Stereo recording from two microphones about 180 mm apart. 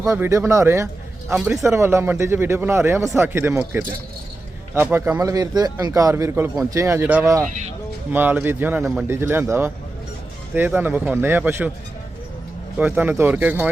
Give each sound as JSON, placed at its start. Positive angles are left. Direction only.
{"t": 0.0, "sound": "a man's voice", "side_deg": -15}
{"t": 12.7, "sound": "a man's voice", "side_deg": -10}